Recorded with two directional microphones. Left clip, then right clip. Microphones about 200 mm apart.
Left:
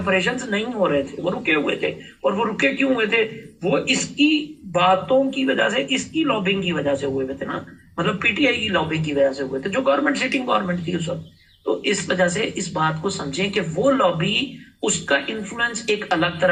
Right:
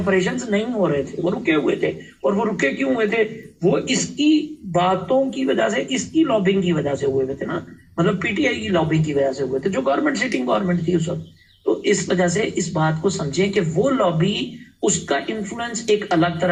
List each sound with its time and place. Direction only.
0.0 s speech: 40° right (ahead or behind)